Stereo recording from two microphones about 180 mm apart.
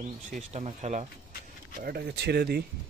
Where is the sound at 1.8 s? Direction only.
60° right (ahead or behind).